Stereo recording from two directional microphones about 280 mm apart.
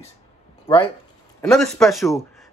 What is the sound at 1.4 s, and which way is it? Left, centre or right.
Speech, centre.